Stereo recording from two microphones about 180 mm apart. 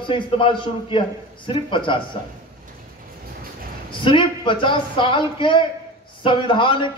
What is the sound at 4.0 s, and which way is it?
A man's voice, 30° left (ahead or behind).